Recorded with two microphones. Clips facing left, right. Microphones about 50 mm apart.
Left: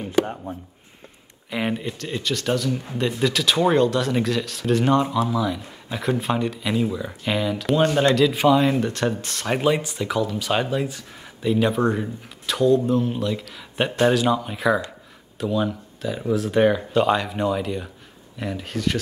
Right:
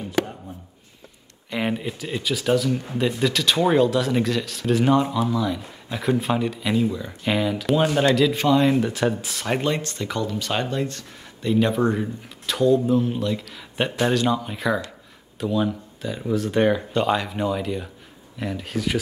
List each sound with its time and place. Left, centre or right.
0.2 s speech: left
1.5 s speech: centre